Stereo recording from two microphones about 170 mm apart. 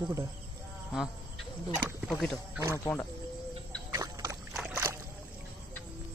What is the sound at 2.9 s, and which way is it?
Speech, 10° left (ahead or behind).